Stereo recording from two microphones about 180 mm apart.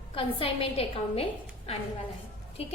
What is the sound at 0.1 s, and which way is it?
A woman's voice, 30° left (ahead or behind).